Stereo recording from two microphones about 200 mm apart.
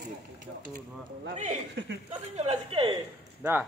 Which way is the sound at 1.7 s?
60° right (ahead or behind).